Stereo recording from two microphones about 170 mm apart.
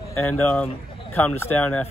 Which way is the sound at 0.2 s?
10° left (ahead or behind).